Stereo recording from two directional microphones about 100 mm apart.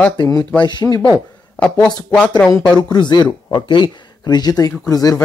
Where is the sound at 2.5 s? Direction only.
45° left (ahead or behind).